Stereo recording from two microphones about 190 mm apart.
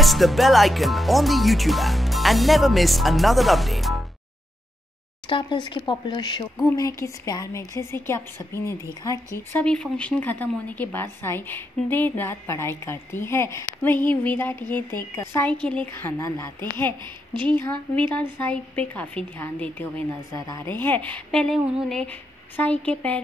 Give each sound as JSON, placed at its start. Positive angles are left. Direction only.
{"t": 0.0, "sound": "speech", "side_deg": 0}
{"t": 5.3, "sound": "speech", "side_deg": 25}
{"t": 17.3, "sound": "a woman's voice", "side_deg": -25}
{"t": 18.8, "sound": "speech", "side_deg": 5}